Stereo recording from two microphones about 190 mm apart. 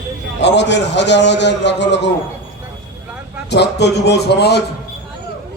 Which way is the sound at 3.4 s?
60° left (ahead or behind).